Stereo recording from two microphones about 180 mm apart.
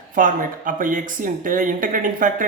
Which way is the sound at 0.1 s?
50° right (ahead or behind).